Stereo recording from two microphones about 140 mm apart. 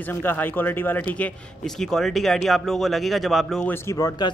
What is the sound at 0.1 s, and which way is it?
A man's voice, 15° left (ahead or behind).